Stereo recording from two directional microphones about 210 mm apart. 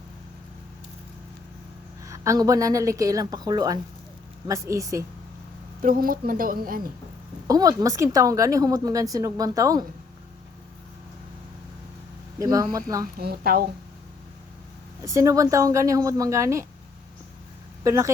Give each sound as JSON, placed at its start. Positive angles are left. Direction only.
{"t": 2.0, "sound": "a woman's voice", "side_deg": -15}
{"t": 5.8, "sound": "a woman's voice", "side_deg": -40}
{"t": 7.4, "sound": "a woman's voice", "side_deg": -15}
{"t": 12.4, "sound": "a woman's voice", "side_deg": -15}
{"t": 13.1, "sound": "a woman's voice", "side_deg": -50}
{"t": 15.0, "sound": "a woman's voice", "side_deg": -15}
{"t": 17.8, "sound": "a woman's voice", "side_deg": -15}